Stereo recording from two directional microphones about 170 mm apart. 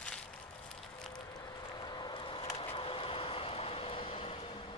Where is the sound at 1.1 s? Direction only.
25° left (ahead or behind).